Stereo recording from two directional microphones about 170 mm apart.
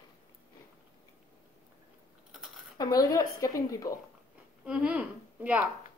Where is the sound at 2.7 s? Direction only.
20° left (ahead or behind).